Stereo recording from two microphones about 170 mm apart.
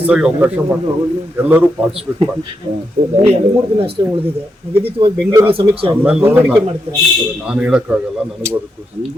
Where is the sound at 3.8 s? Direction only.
35° right (ahead or behind).